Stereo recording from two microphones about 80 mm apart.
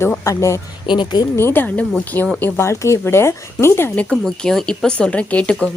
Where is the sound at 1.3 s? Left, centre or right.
Left.